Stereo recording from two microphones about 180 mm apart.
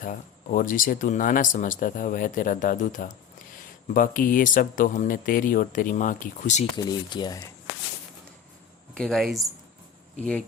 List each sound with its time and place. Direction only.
0.0 s speech: 50° left (ahead or behind)
6.7 s speech: 20° left (ahead or behind)
9.0 s speech: centre (ahead or behind)